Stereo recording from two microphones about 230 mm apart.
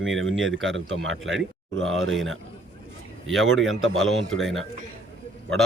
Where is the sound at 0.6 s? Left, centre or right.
Right.